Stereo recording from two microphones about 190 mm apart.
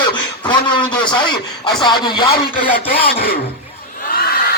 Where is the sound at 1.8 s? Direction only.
25° left (ahead or behind).